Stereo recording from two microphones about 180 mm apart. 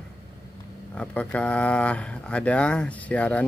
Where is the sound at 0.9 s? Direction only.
5° left (ahead or behind).